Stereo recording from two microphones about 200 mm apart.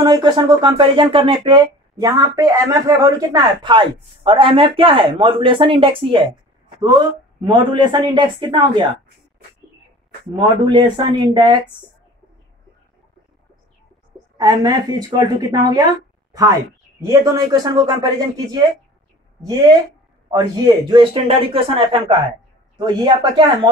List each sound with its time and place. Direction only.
0.0 s speech: 25° right (ahead or behind)
7.4 s speech: 20° right (ahead or behind)
10.3 s speech: 20° right (ahead or behind)
14.3 s speech: 20° right (ahead or behind)
19.4 s speech: 20° right (ahead or behind)